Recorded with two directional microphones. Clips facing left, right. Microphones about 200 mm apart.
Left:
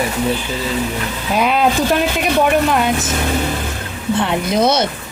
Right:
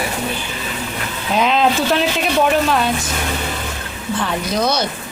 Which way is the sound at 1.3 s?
10° left (ahead or behind).